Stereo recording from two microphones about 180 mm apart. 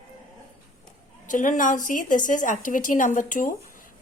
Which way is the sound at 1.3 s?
45° left (ahead or behind).